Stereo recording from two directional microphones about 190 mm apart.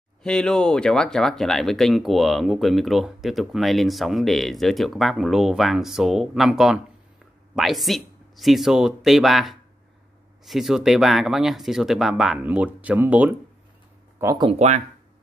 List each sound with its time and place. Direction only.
0.2 s speech: 5° left (ahead or behind); by 14.5 s 20° right (ahead or behind)
14.5 s speech: 35° right (ahead or behind)